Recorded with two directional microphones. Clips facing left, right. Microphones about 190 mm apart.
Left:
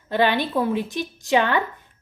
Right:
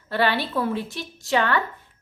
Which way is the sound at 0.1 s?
15° left (ahead or behind).